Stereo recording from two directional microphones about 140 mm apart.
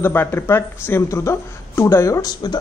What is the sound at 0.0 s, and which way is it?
A man's voice, 15° left (ahead or behind).